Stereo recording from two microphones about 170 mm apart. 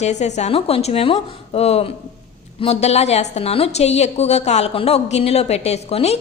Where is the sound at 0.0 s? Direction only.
40° left (ahead or behind).